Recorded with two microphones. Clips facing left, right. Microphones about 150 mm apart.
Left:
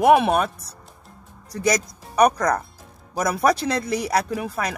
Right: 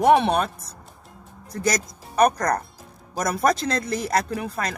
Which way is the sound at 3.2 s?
5° left (ahead or behind).